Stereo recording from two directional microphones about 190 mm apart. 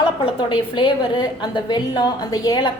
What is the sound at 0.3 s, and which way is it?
A woman's voice, 25° left (ahead or behind).